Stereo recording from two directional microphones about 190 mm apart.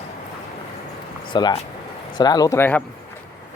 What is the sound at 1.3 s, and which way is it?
Speech, 20° left (ahead or behind).